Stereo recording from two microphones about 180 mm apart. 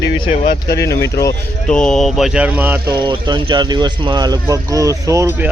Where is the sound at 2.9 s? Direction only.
25° right (ahead or behind).